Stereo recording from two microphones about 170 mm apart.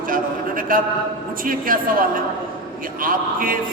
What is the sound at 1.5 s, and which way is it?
A man's voice, 55° right (ahead or behind).